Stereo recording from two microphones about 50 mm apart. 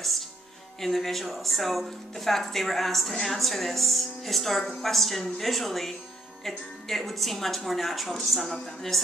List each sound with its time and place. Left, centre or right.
0.7 s speech: centre